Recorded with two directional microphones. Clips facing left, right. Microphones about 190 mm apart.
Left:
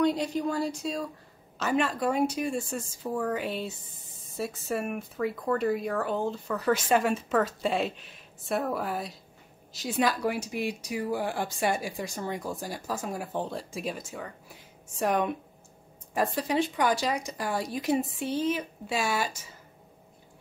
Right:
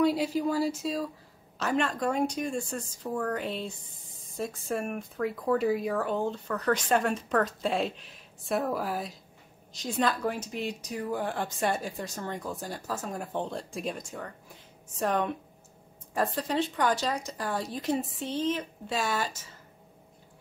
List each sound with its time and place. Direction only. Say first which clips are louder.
0.0 s speech: right 1 dB; 5° right (ahead or behind)